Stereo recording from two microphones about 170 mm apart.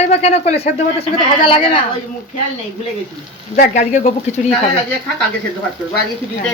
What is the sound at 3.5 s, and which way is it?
Speech, 45° left (ahead or behind).